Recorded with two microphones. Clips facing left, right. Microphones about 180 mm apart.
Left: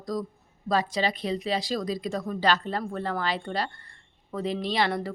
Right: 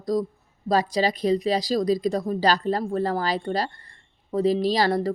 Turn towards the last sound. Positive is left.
turn(degrees=-35)  # may be behind; listen again after turning